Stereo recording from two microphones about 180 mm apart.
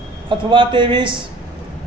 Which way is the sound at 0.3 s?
30° right (ahead or behind).